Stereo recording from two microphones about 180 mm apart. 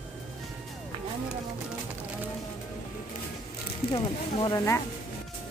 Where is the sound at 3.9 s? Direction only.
25° left (ahead or behind).